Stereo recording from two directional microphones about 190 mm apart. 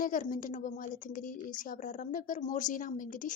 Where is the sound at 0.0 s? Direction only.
45° left (ahead or behind).